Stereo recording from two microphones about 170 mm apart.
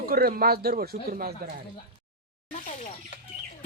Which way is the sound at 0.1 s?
60° right (ahead or behind).